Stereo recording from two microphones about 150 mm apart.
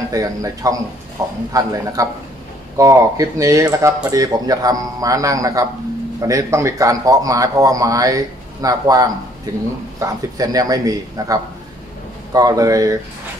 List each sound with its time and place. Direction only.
0.1 s speech: 20° right (ahead or behind)